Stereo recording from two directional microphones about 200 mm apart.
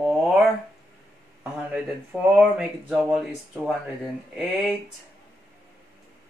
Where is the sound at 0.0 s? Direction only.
Centre (ahead or behind).